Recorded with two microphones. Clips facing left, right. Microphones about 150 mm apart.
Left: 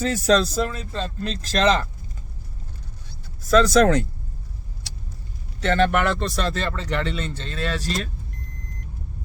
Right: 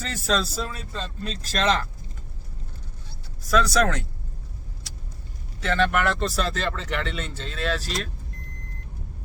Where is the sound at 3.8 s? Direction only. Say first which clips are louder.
Left 6 dB; centre (ahead or behind).